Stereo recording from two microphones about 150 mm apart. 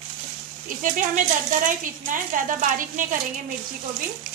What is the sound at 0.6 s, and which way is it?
Speech, 60° right (ahead or behind).